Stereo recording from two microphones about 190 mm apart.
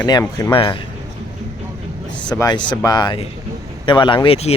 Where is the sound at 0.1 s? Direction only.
20° left (ahead or behind).